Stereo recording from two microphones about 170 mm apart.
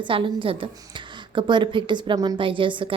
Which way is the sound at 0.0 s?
30° right (ahead or behind).